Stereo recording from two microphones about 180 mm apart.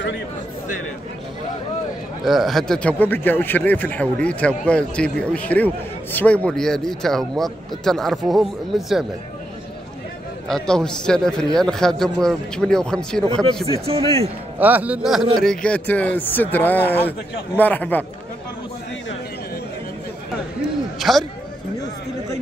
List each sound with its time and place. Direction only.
2.2 s a man's voice: centre (ahead or behind)
10.5 s speech: 5° left (ahead or behind)
13.2 s speech: 25° right (ahead or behind)
14.6 s a man's voice: 10° right (ahead or behind); by 18.0 s 10° left (ahead or behind)
21.0 s speech: centre (ahead or behind)